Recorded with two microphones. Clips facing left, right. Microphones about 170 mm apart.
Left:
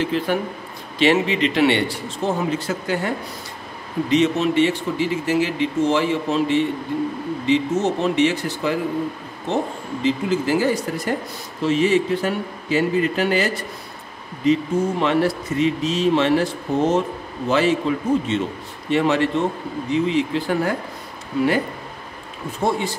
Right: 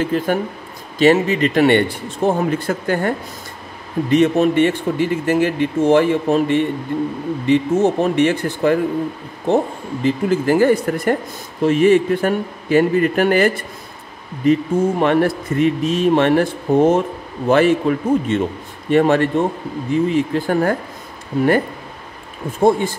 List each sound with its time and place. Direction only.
0.0 s speech: 45° right (ahead or behind)
4.1 s speech: 55° right (ahead or behind)
10.0 s speech: 55° right (ahead or behind)
22.6 s speech: 50° right (ahead or behind)